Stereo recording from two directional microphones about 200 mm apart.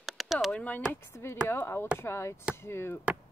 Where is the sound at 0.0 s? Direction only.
Centre (ahead or behind).